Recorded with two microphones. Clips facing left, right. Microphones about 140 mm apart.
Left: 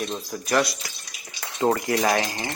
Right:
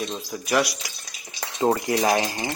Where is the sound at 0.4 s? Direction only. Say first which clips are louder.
Even; 10° right (ahead or behind).